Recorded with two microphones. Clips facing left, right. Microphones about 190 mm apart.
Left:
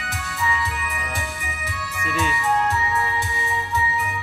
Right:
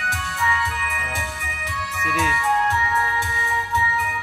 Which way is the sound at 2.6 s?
20° left (ahead or behind).